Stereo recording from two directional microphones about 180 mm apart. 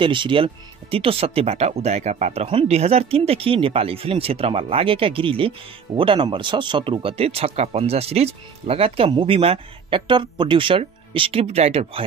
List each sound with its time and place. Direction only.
0.0 s speech: 25° right (ahead or behind)